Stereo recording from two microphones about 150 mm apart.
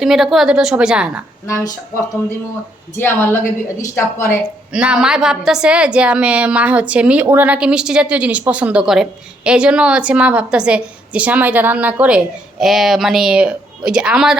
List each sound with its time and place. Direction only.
0.0 s a woman's voice: centre (ahead or behind)
1.5 s a woman's voice: 20° left (ahead or behind)
4.7 s a woman's voice: 5° right (ahead or behind)